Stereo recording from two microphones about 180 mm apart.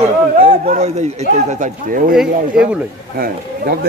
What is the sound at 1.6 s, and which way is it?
Speech, 50° right (ahead or behind).